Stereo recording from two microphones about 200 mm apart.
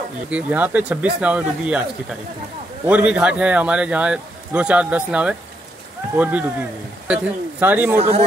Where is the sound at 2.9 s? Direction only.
5° right (ahead or behind).